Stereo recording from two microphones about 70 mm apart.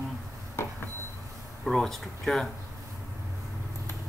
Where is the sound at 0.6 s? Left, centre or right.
Left.